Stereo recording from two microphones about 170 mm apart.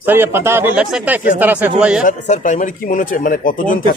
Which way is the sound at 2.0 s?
45° left (ahead or behind).